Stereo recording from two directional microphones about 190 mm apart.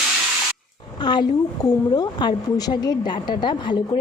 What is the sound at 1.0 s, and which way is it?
A woman's voice, 25° left (ahead or behind).